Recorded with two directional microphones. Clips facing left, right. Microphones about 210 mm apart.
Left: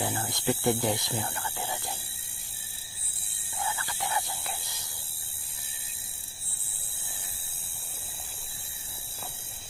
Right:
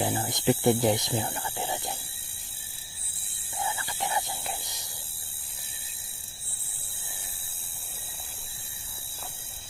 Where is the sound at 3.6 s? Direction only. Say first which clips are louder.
Right 2 dB; 20° right (ahead or behind).